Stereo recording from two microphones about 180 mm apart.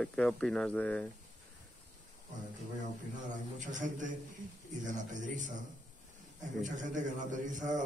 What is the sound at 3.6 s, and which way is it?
A man's voice, 45° right (ahead or behind).